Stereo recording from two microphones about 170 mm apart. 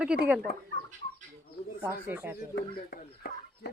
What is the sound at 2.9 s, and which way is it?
Speech, 65° left (ahead or behind).